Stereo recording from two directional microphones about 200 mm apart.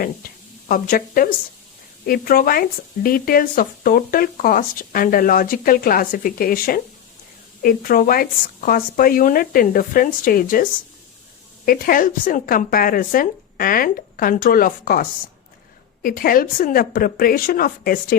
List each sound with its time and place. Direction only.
0.7 s speech: 45° left (ahead or behind)
16.0 s speech: 45° left (ahead or behind)